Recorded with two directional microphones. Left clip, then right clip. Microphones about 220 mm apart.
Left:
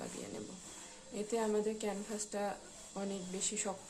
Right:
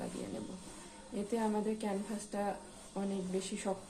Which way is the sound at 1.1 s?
20° left (ahead or behind).